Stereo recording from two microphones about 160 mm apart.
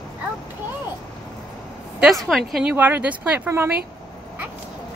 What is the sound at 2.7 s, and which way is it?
Speech, 10° right (ahead or behind).